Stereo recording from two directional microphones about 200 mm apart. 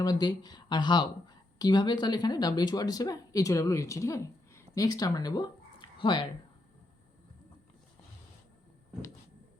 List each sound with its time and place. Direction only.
0.0 s speech: 20° left (ahead or behind)